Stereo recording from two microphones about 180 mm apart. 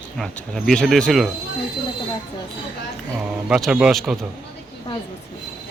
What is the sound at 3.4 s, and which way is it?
Speech, 5° right (ahead or behind).